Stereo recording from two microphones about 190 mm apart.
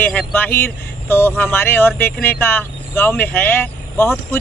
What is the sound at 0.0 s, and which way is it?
Speech, 10° left (ahead or behind).